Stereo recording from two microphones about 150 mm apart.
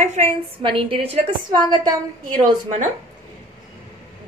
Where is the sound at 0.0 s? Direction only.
50° right (ahead or behind).